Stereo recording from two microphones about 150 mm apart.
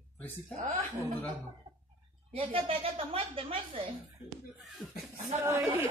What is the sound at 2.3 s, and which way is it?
A woman's voice, 40° right (ahead or behind).